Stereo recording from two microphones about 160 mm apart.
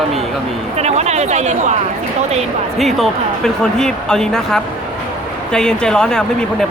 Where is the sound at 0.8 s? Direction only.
45° right (ahead or behind).